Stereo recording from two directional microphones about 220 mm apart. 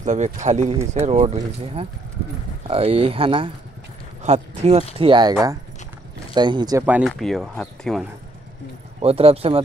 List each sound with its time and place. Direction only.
0.0 s speech: 35° right (ahead or behind)
6.9 s speech: centre (ahead or behind)
9.0 s speech: 25° right (ahead or behind)